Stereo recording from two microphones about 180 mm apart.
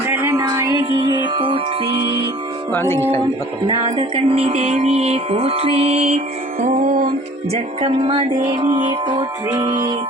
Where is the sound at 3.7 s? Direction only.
25° right (ahead or behind); by 7.5 s 50° right (ahead or behind).